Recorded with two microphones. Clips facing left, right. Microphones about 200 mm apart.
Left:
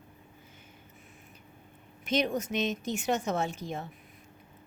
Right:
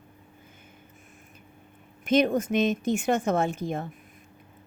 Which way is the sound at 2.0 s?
55° right (ahead or behind).